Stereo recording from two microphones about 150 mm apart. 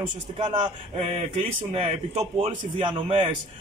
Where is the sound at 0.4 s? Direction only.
40° right (ahead or behind).